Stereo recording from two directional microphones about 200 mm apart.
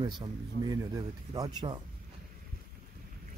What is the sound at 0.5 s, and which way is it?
Speech, 30° left (ahead or behind).